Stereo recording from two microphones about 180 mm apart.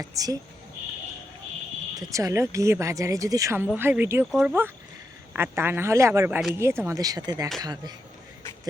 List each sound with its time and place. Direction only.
0.0 s speech: 20° right (ahead or behind)
2.0 s speech: 20° right (ahead or behind)
4.3 s speech: centre (ahead or behind)
5.3 s speech: 10° right (ahead or behind)